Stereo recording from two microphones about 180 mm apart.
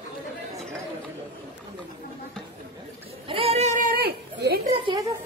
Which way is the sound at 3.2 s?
30° right (ahead or behind).